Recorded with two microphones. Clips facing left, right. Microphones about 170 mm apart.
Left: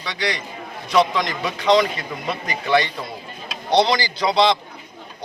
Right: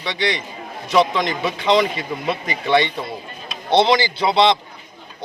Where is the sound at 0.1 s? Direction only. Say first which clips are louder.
Right 3 dB; centre (ahead or behind).